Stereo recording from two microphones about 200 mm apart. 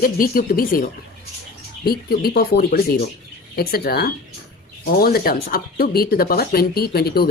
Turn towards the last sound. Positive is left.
turn(degrees=50)  # may be behind; listen again after turning